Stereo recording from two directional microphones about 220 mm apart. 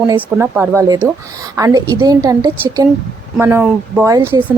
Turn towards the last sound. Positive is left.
turn(degrees=-15)  # may be behind; listen again after turning